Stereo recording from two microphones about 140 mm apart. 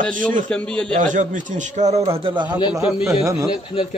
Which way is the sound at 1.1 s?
65° right (ahead or behind).